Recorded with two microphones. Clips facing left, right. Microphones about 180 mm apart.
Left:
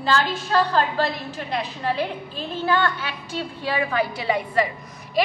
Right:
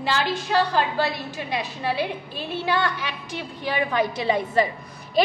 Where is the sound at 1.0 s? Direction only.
10° right (ahead or behind).